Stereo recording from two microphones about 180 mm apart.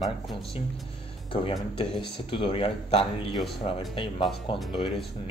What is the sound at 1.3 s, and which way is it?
Speech, 30° left (ahead or behind).